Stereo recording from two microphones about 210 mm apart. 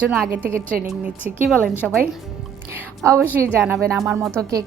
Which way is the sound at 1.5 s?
Centre (ahead or behind).